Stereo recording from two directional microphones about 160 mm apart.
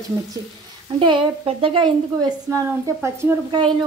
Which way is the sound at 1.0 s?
30° right (ahead or behind).